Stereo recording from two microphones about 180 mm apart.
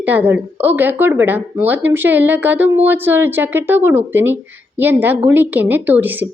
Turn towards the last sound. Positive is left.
turn(degrees=-10)  # may be behind; listen again after turning